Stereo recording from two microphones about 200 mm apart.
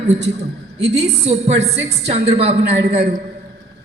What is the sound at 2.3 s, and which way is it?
Speech, 30° right (ahead or behind).